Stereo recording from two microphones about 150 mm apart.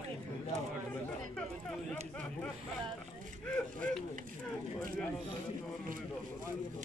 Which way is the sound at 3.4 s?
5° left (ahead or behind).